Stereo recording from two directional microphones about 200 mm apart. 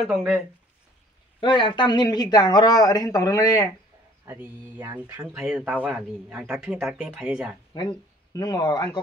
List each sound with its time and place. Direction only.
1.4 s speech: 25° left (ahead or behind)
4.3 s speech: 15° right (ahead or behind)
7.7 s speech: 20° left (ahead or behind)